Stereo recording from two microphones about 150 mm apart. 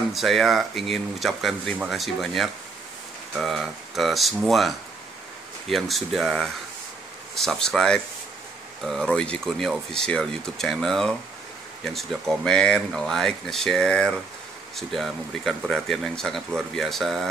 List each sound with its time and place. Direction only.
0.1 s speech: centre (ahead or behind)